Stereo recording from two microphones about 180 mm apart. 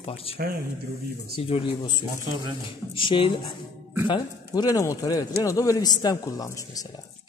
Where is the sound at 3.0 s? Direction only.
30° left (ahead or behind).